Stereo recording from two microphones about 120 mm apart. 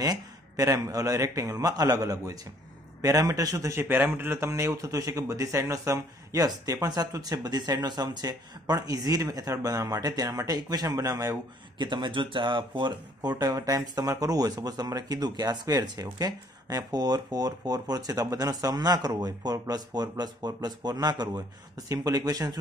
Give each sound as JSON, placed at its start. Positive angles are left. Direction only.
{"t": 0.0, "sound": "a man's voice", "side_deg": -30}
{"t": 3.9, "sound": "speech", "side_deg": -15}